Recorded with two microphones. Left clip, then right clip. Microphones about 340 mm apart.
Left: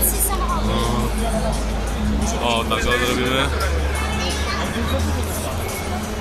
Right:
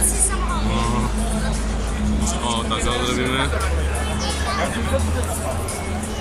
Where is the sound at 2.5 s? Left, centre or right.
Centre.